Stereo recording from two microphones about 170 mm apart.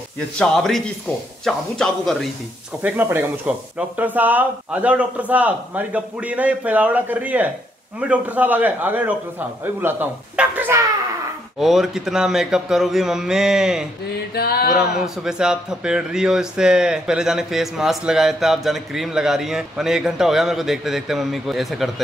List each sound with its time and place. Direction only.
0.4 s speech: centre (ahead or behind)
2.8 s speech: 10° right (ahead or behind)
14.3 s a sound: 65° left (ahead or behind)
14.7 s speech: 5° right (ahead or behind)